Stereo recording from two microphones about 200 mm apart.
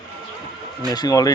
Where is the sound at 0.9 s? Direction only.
20° left (ahead or behind).